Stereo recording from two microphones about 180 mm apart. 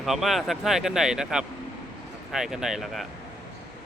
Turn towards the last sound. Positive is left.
turn(degrees=0)  # may be behind; listen again after turning